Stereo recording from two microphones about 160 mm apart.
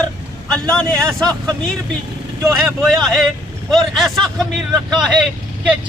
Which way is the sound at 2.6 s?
Centre (ahead or behind).